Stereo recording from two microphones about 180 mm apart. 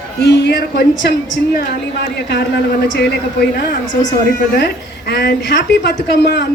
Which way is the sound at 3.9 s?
45° left (ahead or behind).